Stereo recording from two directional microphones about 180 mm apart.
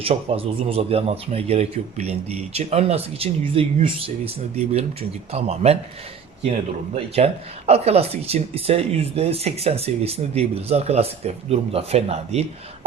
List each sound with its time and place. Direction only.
0.0 s a man's voice: 30° right (ahead or behind)
7.7 s a man's voice: 35° right (ahead or behind)